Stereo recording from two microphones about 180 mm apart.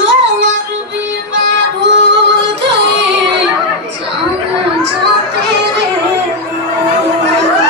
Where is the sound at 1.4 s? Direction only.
75° right (ahead or behind).